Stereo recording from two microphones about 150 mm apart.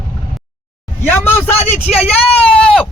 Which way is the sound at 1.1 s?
15° left (ahead or behind).